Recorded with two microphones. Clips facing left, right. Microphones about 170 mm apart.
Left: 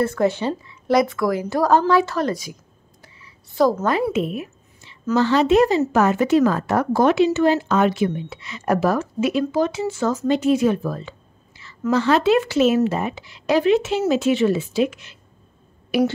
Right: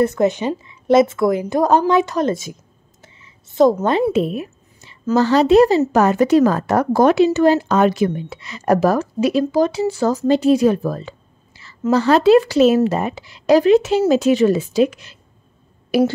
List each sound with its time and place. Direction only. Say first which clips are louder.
0.0 s a woman's voice: right 3 dB; 20° right (ahead or behind); by 15.1 s 40° right (ahead or behind)